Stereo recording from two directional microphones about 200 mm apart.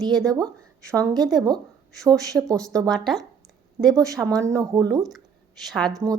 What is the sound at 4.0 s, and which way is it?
Speech, 15° right (ahead or behind).